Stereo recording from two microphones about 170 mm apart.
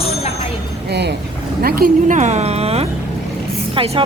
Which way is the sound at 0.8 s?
75° right (ahead or behind).